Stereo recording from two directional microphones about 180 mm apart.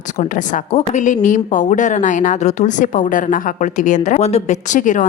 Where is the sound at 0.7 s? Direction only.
40° left (ahead or behind).